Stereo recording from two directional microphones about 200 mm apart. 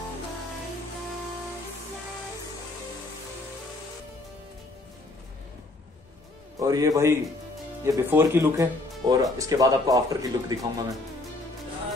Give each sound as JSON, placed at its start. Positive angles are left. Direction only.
{"t": 6.6, "sound": "speech", "side_deg": -20}